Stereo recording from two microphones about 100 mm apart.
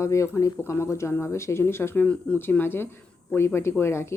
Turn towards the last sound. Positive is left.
turn(degrees=25)  # may be behind; listen again after turning